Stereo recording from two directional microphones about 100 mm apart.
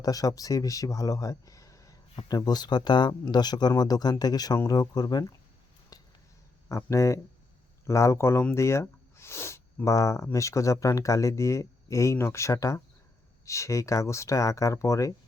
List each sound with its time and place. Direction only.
0.0 s speech: 40° left (ahead or behind)
5.9 s a sound: 40° left (ahead or behind)
6.7 s speech: 30° left (ahead or behind)